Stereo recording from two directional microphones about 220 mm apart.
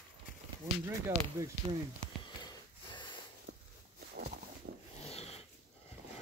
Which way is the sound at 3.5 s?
55° right (ahead or behind).